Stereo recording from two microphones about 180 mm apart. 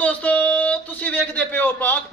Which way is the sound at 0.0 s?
10° left (ahead or behind).